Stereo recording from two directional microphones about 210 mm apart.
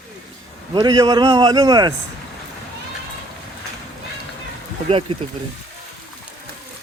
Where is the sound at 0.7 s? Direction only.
20° right (ahead or behind).